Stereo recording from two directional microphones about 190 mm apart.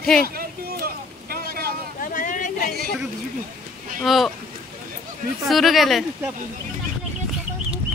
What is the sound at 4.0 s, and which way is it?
Speech, centre (ahead or behind).